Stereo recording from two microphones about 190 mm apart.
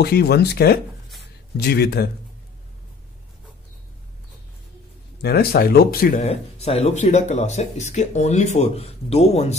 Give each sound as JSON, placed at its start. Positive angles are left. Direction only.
{"t": 0.0, "sound": "speech", "side_deg": 55}
{"t": 5.2, "sound": "speech", "side_deg": 55}
{"t": 6.2, "sound": "speech", "side_deg": 30}